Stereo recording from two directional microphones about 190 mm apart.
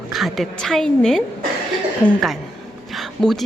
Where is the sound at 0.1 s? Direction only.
Centre (ahead or behind).